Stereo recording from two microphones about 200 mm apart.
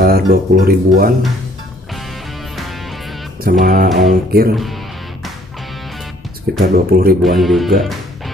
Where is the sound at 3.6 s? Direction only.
45° right (ahead or behind).